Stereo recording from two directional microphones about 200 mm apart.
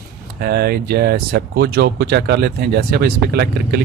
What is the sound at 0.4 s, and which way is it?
Speech, 55° right (ahead or behind).